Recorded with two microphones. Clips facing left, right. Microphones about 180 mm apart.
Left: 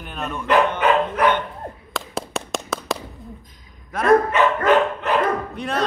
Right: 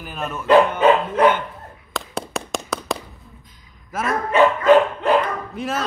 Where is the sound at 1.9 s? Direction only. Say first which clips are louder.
Right 1 dB; centre (ahead or behind).